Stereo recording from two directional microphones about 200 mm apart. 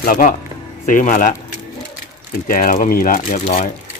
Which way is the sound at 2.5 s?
45° left (ahead or behind).